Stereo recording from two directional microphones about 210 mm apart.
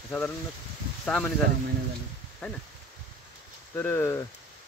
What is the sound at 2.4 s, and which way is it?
Speech, 5° left (ahead or behind).